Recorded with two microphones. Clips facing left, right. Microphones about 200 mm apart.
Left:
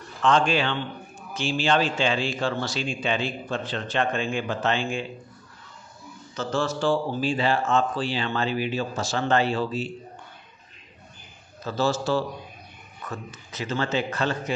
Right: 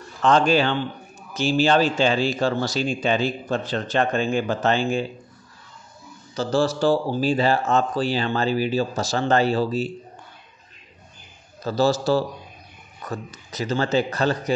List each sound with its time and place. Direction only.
0.2 s a man's voice: 40° right (ahead or behind)
6.3 s a man's voice: 35° right (ahead or behind)
11.6 s a man's voice: 35° right (ahead or behind)